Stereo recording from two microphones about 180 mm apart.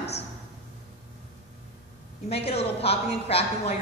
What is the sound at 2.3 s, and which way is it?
A woman's voice, 35° left (ahead or behind).